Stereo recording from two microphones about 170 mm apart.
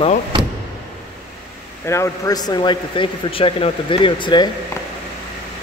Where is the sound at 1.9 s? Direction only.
15° left (ahead or behind).